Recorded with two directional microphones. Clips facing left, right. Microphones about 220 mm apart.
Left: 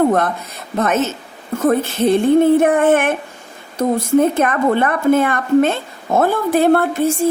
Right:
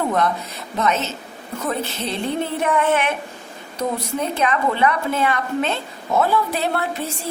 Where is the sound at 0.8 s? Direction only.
50° left (ahead or behind).